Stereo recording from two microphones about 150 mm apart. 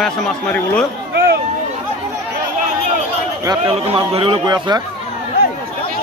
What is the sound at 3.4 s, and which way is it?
Speech, 30° right (ahead or behind).